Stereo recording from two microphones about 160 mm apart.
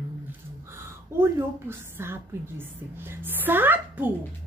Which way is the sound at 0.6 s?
15° right (ahead or behind).